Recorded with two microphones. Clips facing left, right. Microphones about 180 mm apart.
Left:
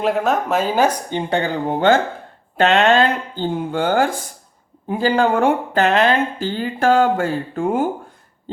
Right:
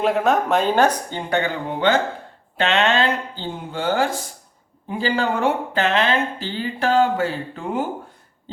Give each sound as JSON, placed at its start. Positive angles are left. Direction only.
{"t": 0.0, "sound": "speech", "side_deg": 0}
{"t": 1.1, "sound": "speech", "side_deg": 20}
{"t": 1.6, "sound": "speech", "side_deg": 45}